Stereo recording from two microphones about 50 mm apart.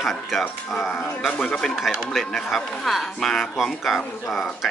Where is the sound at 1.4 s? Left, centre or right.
Centre.